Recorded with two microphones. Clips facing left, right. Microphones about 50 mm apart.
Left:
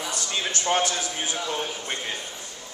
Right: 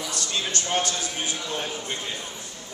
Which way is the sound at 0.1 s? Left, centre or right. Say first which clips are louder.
Right 1 dB; left.